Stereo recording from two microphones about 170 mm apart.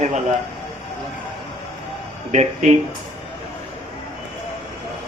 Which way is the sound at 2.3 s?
45° right (ahead or behind).